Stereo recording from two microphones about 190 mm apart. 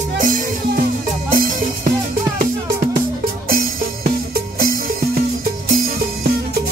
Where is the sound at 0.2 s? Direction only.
45° right (ahead or behind).